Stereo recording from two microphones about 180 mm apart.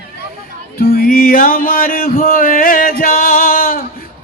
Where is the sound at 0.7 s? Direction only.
55° left (ahead or behind).